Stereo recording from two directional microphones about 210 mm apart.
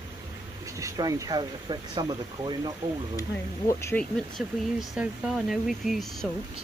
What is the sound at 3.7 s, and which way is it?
Speech, 10° left (ahead or behind).